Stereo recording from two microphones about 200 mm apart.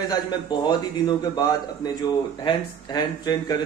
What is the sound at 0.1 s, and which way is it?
A man's voice, 20° left (ahead or behind).